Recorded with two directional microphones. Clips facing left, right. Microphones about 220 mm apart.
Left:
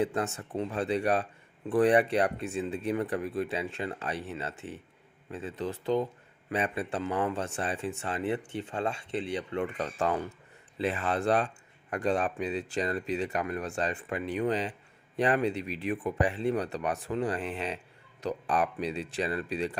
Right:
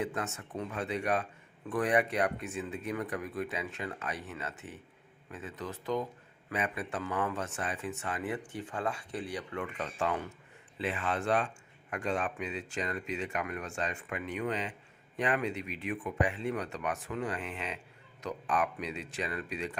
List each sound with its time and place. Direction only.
0.0 s speech: 30° left (ahead or behind)